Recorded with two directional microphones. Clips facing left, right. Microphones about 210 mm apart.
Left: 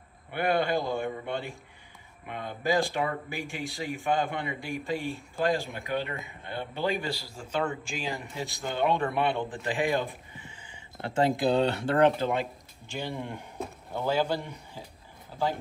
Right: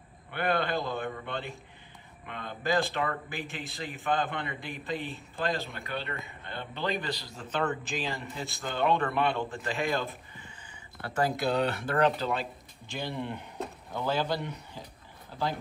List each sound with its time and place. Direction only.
0.3 s speech: 10° left (ahead or behind)
13.9 s speech: 10° left (ahead or behind)